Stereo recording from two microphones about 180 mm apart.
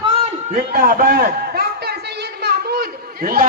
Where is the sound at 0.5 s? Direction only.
55° right (ahead or behind).